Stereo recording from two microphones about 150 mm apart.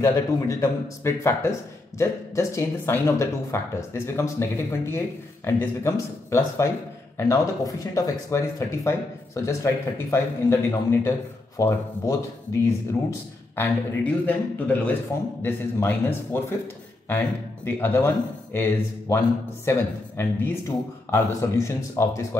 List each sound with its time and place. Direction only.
0.0 s speech: 20° left (ahead or behind)
13.6 s speech: 10° left (ahead or behind)
17.6 s speech: 15° left (ahead or behind)